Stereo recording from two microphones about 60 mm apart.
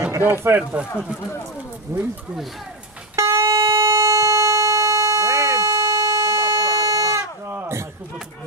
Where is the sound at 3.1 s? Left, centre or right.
Right.